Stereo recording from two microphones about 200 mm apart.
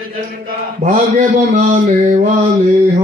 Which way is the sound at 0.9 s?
35° right (ahead or behind).